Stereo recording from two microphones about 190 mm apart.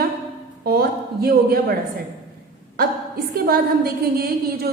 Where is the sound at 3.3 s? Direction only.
50° right (ahead or behind).